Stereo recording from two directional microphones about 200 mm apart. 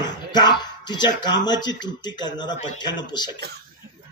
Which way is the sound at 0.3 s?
20° left (ahead or behind).